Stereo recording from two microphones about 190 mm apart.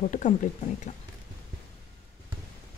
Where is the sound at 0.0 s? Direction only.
40° left (ahead or behind).